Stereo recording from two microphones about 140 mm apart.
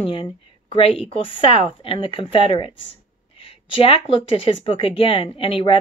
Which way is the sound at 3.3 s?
40° left (ahead or behind).